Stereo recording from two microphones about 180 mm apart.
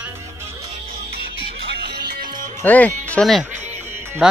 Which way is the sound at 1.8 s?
65° right (ahead or behind).